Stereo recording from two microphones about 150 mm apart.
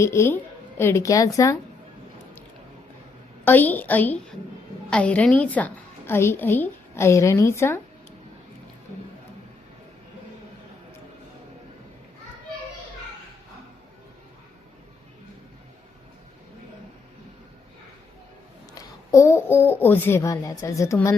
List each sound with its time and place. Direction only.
0.0 s a woman's voice: 20° left (ahead or behind)
3.4 s a woman's voice: 15° left (ahead or behind)
18.7 s a child's voice: 20° left (ahead or behind)